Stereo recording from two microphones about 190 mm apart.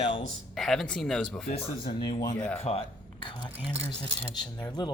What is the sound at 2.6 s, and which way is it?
Speech, 30° left (ahead or behind).